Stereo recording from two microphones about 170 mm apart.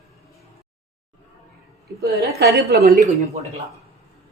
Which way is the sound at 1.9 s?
65° right (ahead or behind).